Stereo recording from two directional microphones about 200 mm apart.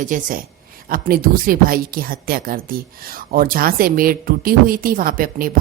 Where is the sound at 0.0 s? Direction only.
40° right (ahead or behind).